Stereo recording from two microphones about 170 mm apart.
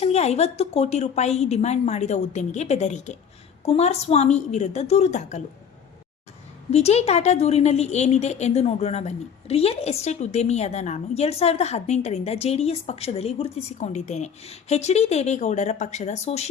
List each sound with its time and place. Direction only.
0.0 s a woman's voice: 40° left (ahead or behind)
6.7 s a woman's voice: 40° left (ahead or behind)